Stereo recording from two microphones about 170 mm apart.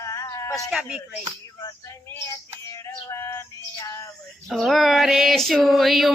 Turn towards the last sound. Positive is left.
turn(degrees=0)  # may be behind; listen again after turning